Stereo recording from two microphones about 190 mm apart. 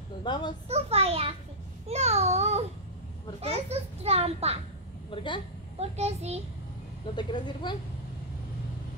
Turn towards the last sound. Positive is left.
turn(degrees=25)  # may be behind; listen again after turning